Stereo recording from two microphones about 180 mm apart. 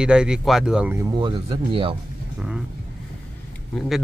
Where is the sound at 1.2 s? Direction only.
30° right (ahead or behind).